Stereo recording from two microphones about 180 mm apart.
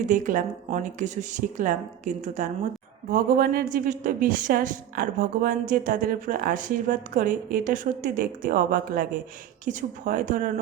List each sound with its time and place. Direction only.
0.1 s a woman's voice: 45° right (ahead or behind)
3.1 s a woman's voice: 55° right (ahead or behind)